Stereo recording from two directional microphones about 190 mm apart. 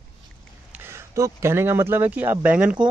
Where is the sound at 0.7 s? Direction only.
15° right (ahead or behind).